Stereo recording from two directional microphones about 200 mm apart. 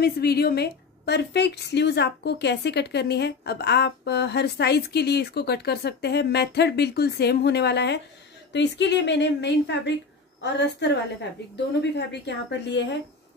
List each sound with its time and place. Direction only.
0.0 s a woman's voice: 50° left (ahead or behind)